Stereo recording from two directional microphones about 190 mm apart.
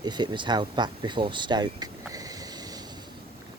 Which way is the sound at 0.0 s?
20° right (ahead or behind).